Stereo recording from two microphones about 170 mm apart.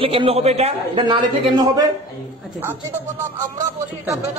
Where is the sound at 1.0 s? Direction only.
25° right (ahead or behind).